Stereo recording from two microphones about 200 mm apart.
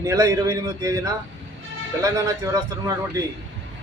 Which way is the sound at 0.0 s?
15° right (ahead or behind).